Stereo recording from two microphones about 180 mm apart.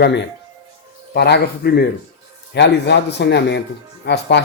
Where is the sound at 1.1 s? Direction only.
65° left (ahead or behind).